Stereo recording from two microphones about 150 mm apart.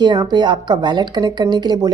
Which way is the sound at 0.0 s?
30° right (ahead or behind).